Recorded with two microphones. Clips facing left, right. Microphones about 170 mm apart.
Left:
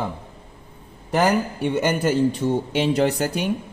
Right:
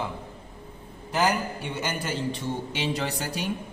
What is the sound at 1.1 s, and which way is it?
A man's voice, 55° left (ahead or behind).